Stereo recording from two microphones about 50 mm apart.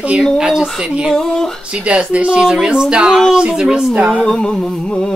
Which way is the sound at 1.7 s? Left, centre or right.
Right.